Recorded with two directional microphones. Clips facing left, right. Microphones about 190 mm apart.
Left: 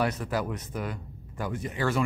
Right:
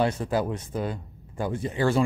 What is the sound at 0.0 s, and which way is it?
Speech, 30° right (ahead or behind).